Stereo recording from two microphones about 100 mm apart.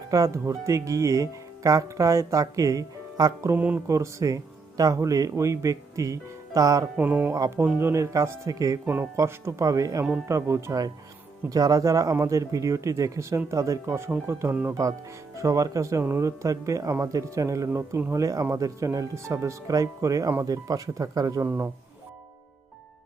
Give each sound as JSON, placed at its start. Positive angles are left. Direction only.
{"t": 0.1, "sound": "speech", "side_deg": -35}
{"t": 3.5, "sound": "music", "side_deg": -15}
{"t": 3.8, "sound": "speech", "side_deg": -30}
{"t": 6.9, "sound": "music", "side_deg": -20}
{"t": 7.8, "sound": "speech", "side_deg": -25}
{"t": 15.4, "sound": "speech", "side_deg": -35}
{"t": 17.7, "sound": "speech", "side_deg": -20}
{"t": 21.4, "sound": "speech", "side_deg": -20}